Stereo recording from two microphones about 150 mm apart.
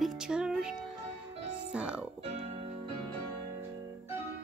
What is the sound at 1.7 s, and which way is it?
Speech, 5° right (ahead or behind).